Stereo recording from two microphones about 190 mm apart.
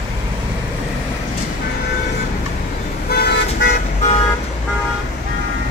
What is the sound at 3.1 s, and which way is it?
Car, 60° left (ahead or behind).